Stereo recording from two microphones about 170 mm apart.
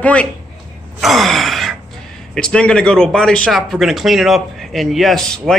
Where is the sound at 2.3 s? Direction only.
5° left (ahead or behind).